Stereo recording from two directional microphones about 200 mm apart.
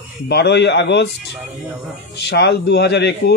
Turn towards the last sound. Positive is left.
turn(degrees=60)  # may be behind; listen again after turning